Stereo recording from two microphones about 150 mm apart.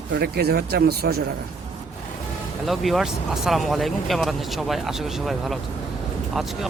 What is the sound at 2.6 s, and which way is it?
Speech, centre (ahead or behind).